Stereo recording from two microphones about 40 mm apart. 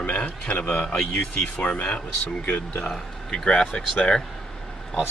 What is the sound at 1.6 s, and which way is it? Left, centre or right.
Speech, left.